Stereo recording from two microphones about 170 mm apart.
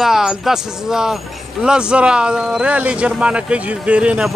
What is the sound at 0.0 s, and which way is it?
Speech, centre (ahead or behind).